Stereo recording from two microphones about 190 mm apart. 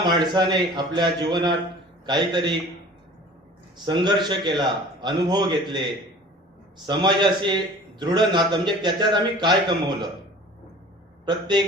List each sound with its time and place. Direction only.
0.0 s a man's voice: 25° right (ahead or behind)
3.8 s a man's voice: 25° right (ahead or behind)
11.3 s a man's voice: 25° right (ahead or behind)